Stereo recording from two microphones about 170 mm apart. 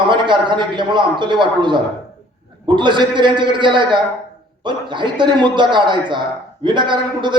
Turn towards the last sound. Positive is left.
turn(degrees=-25)  # may be behind; listen again after turning